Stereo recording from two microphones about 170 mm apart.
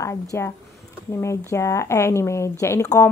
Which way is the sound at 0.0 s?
15° left (ahead or behind).